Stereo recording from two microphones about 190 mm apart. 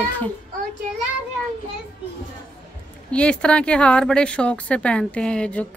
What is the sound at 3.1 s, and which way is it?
Speech, 5° left (ahead or behind).